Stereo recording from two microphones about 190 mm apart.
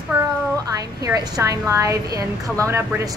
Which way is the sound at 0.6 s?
20° right (ahead or behind).